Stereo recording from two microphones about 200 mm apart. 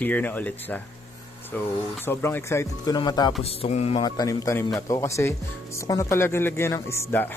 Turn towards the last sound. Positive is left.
turn(degrees=10)  # may be behind; listen again after turning